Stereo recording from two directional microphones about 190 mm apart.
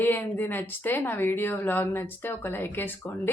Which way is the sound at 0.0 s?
10° left (ahead or behind).